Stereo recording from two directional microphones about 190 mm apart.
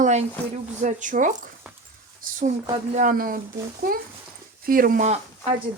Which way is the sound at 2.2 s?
45° right (ahead or behind).